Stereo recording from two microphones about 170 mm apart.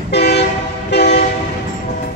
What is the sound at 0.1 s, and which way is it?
Train, 75° left (ahead or behind).